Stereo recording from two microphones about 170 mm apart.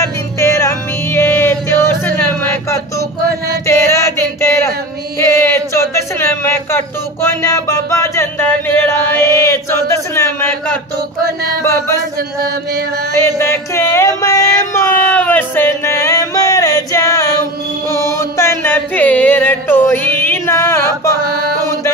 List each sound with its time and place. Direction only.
0.0 s music: 15° left (ahead or behind)
3.6 s a sound: 15° left (ahead or behind)
7.2 s music: 15° left (ahead or behind)
9.5 s chant: 15° left (ahead or behind)
13.2 s a sound: 15° left (ahead or behind)
17.8 s music: 15° left (ahead or behind)
21.3 s music: 65° right (ahead or behind)